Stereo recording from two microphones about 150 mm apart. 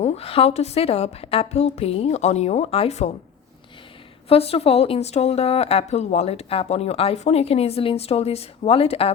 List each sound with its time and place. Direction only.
0.0 s speech: 45° left (ahead or behind)
4.3 s speech: 40° left (ahead or behind)